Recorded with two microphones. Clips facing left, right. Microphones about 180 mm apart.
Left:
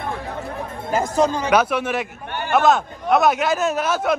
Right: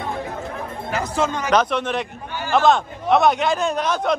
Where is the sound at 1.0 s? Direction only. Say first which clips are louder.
Left 3 dB; 40° left (ahead or behind).